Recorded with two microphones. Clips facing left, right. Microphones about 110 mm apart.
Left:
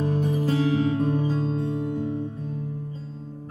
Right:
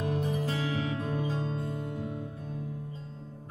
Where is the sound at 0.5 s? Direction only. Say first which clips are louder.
Left 10 dB; 35° left (ahead or behind).